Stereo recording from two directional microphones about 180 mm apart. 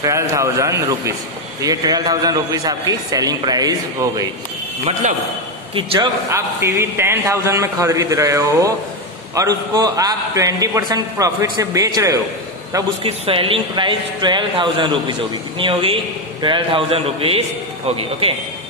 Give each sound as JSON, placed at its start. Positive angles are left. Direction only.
{"t": 0.0, "sound": "a man's voice", "side_deg": -15}
{"t": 5.0, "sound": "a man's voice", "side_deg": -45}
{"t": 5.8, "sound": "a man's voice", "side_deg": -30}
{"t": 6.3, "sound": "a man's voice", "side_deg": -15}
{"t": 13.0, "sound": "a man's voice", "side_deg": -30}